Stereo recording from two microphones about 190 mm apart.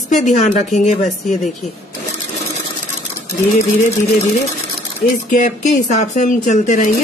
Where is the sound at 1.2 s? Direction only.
Centre (ahead or behind).